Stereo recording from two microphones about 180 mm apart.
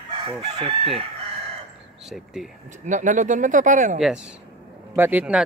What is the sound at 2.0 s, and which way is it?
Speech, centre (ahead or behind).